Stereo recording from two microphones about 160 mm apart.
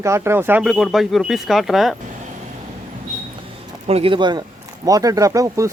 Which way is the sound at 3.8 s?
35° right (ahead or behind).